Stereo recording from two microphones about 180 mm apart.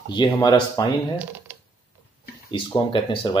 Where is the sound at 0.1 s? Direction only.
25° left (ahead or behind).